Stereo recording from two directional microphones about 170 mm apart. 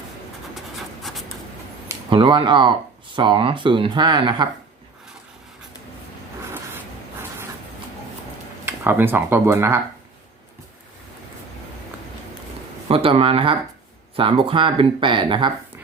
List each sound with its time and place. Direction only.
0.5 s a sound: centre (ahead or behind)
2.0 s speech: 30° right (ahead or behind)
8.6 s speech: 15° right (ahead or behind)
12.9 s speech: 35° right (ahead or behind)